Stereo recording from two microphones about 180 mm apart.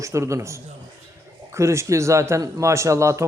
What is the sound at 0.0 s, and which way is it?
Speech, 15° right (ahead or behind).